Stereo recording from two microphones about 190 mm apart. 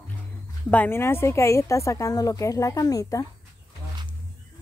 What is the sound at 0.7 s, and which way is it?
Speech, 10° left (ahead or behind).